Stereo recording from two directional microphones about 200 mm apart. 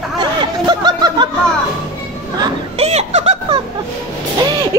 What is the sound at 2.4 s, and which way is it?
Speech, 30° right (ahead or behind).